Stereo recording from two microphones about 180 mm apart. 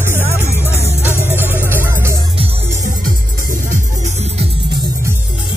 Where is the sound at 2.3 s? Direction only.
35° right (ahead or behind).